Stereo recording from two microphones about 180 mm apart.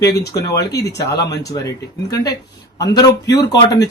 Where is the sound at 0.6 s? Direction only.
65° left (ahead or behind).